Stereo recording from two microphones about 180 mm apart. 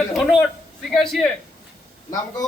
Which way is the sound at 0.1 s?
Centre (ahead or behind).